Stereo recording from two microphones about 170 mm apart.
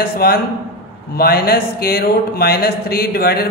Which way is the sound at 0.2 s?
65° left (ahead or behind).